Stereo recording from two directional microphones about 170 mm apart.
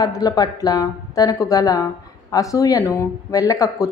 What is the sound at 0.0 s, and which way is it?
A woman's voice, 20° left (ahead or behind).